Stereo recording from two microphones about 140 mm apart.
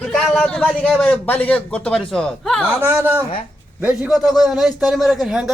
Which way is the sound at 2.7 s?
15° right (ahead or behind).